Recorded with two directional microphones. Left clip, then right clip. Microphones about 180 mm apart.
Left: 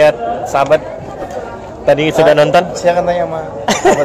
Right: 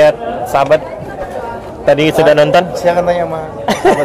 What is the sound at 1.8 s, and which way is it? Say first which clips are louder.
A man's voice: even; 20° right (ahead or behind).